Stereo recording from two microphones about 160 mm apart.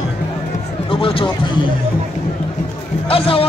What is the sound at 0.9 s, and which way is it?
Speech, 35° left (ahead or behind).